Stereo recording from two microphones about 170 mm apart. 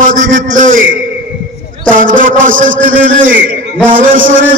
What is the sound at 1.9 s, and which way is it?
A man's voice, 50° right (ahead or behind).